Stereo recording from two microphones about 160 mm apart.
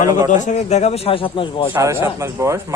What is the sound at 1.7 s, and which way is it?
Speech, 15° right (ahead or behind).